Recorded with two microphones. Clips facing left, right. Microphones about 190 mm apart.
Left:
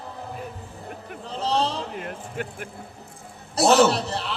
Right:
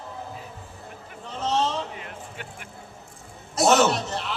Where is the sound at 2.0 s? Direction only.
50° left (ahead or behind).